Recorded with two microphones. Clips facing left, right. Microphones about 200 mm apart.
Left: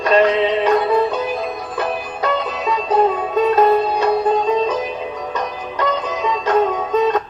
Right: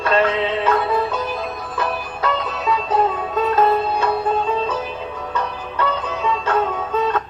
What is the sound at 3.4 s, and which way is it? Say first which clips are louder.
Sitar: left 3 dB; 15° left (ahead or behind).